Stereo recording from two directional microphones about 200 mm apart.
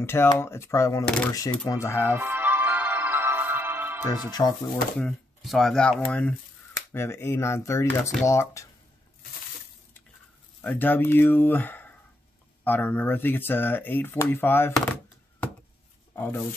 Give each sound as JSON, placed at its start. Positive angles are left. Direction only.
{"t": 0.0, "sound": "speech", "side_deg": 10}
{"t": 1.0, "sound": "speech", "side_deg": 5}
{"t": 1.7, "sound": "speech", "side_deg": 15}
{"t": 2.0, "sound": "music", "side_deg": -10}
{"t": 4.3, "sound": "speech", "side_deg": 20}
{"t": 4.9, "sound": "speech", "side_deg": 0}
{"t": 10.6, "sound": "speech", "side_deg": 10}
{"t": 16.2, "sound": "speech", "side_deg": 10}